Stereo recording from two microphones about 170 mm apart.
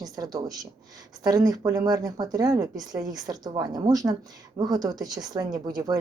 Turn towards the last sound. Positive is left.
turn(degrees=-20)  # may be behind; listen again after turning